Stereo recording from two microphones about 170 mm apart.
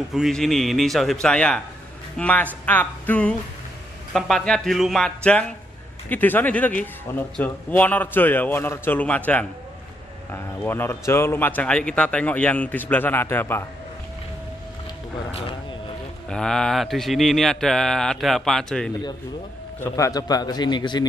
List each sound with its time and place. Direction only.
0.1 s a man's voice: centre (ahead or behind)
16.3 s speech: 5° left (ahead or behind)
19.8 s a man's voice: 20° left (ahead or behind)